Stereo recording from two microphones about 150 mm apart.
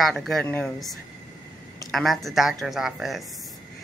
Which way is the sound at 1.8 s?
Centre (ahead or behind).